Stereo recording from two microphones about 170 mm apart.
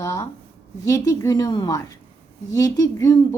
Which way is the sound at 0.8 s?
20° left (ahead or behind).